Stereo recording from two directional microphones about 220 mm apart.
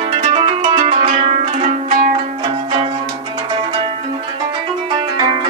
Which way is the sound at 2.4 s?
25° right (ahead or behind).